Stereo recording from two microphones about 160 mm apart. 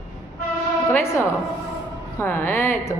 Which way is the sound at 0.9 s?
15° left (ahead or behind).